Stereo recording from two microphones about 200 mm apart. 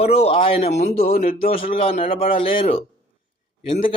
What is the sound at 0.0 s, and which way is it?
Speech, 30° left (ahead or behind).